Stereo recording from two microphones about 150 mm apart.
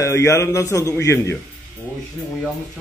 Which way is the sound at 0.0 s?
20° left (ahead or behind).